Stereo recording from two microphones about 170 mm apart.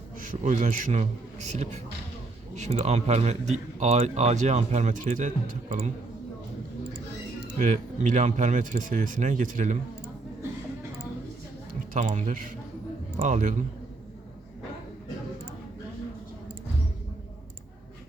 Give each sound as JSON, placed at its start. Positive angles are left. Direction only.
{"t": 0.2, "sound": "a man's voice", "side_deg": -50}
{"t": 2.6, "sound": "speech", "side_deg": -40}
{"t": 7.6, "sound": "speech", "side_deg": -45}
{"t": 11.9, "sound": "speech", "side_deg": -50}